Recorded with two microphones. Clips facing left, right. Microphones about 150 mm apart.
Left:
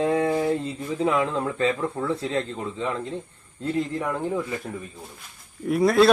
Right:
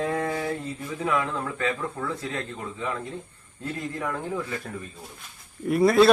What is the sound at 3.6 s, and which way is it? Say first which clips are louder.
Speech: left 6 dB; 20° left (ahead or behind).